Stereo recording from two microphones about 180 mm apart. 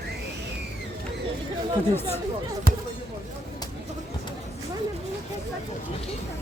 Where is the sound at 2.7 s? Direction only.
60° right (ahead or behind).